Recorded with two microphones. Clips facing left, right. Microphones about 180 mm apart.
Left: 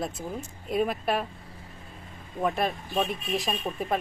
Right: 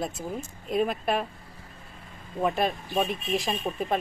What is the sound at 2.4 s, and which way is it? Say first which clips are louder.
Speech: right 1 dB; centre (ahead or behind).